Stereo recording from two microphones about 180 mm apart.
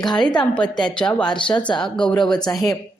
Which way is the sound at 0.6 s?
25° left (ahead or behind).